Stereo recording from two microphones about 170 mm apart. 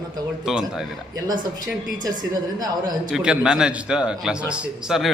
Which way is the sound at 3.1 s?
5° right (ahead or behind).